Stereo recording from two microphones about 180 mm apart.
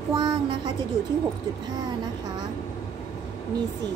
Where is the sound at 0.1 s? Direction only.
25° right (ahead or behind).